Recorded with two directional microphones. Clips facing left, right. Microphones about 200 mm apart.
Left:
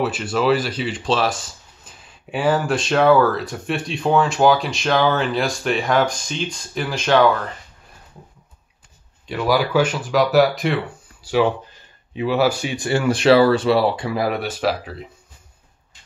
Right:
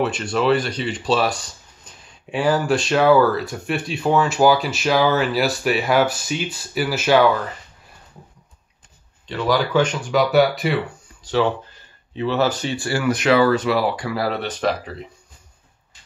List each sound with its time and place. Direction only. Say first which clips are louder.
0.0 s speech: even; 5° left (ahead or behind)
9.3 s speech: left 1 dB; 10° left (ahead or behind)
11.2 s speech: left 1 dB; 10° left (ahead or behind)